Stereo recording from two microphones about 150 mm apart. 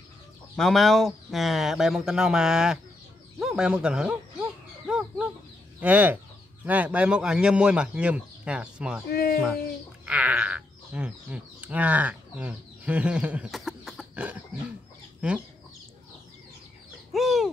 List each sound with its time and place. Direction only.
0.6 s speech: centre (ahead or behind)
3.3 s a sound: 5° right (ahead or behind)
5.8 s speech: 10° right (ahead or behind)
9.1 s speech: 80° left
10.0 s speech: 10° right (ahead or behind)
14.1 s a sound: 10° right (ahead or behind)
15.1 s chicken: 10° right (ahead or behind)
17.1 s bird: centre (ahead or behind)